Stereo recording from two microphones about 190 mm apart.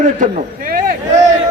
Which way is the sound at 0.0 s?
45° right (ahead or behind).